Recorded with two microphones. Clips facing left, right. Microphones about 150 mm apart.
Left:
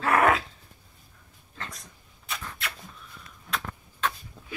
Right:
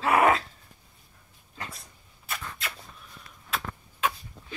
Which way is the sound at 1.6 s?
5° right (ahead or behind).